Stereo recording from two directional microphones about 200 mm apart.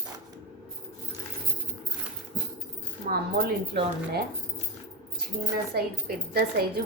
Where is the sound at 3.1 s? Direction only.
50° right (ahead or behind).